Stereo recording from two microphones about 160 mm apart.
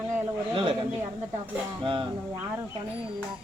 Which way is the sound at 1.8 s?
30° right (ahead or behind).